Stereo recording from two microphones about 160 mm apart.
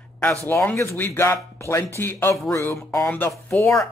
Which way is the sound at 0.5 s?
15° left (ahead or behind).